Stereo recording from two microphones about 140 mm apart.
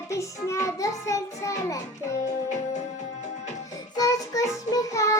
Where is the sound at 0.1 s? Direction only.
20° left (ahead or behind).